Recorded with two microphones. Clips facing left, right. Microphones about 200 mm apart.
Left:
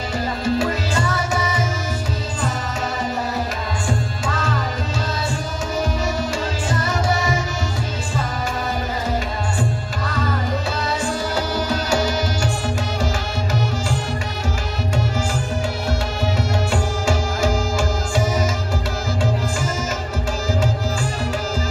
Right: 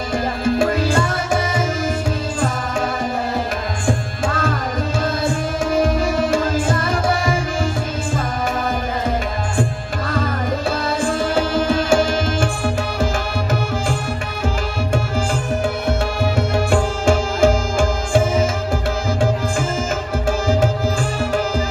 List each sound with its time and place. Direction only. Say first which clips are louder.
0.4 s tabla: right 4 dB; 55° right (ahead or behind)
3.8 s music: right 4 dB; 55° right (ahead or behind)
5.8 s music: right 5 dB; 55° right (ahead or behind)
9.6 s music: right 3 dB; 55° right (ahead or behind)
16.3 s music: right 6 dB; 55° right (ahead or behind)
20.4 s music: right 3 dB; 55° right (ahead or behind)